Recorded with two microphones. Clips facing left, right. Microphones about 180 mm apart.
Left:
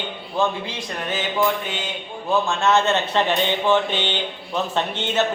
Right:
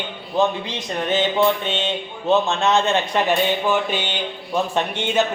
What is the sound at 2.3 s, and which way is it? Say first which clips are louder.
A man's voice: right 1 dB; 20° right (ahead or behind).